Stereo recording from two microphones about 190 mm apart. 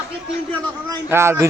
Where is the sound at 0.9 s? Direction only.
15° right (ahead or behind).